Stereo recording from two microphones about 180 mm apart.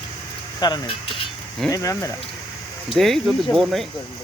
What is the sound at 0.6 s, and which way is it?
Speech, 25° left (ahead or behind).